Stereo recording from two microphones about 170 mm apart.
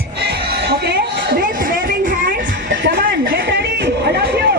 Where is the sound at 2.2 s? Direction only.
90° right.